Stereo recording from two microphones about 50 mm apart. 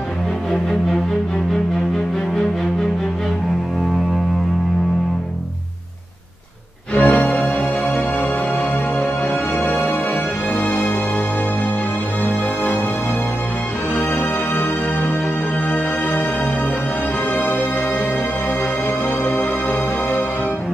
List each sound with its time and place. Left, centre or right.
0.5 s music: centre
6.9 s music: left
14.1 s music: left
17.4 s music: left
19.2 s music: left